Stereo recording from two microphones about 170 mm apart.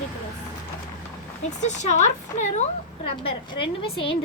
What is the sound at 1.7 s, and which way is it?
A woman's voice, 45° left (ahead or behind).